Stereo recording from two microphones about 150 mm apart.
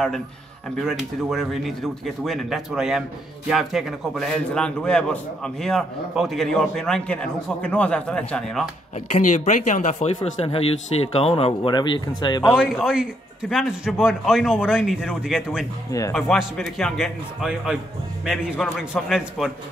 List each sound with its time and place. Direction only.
0.7 s a man's voice: centre (ahead or behind)
9.1 s speech: 50° left (ahead or behind); by 12.4 s 30° left (ahead or behind)
12.8 s a man's voice: 5° right (ahead or behind)
15.9 s speech: 20° left (ahead or behind)
16.2 s a man's voice: centre (ahead or behind)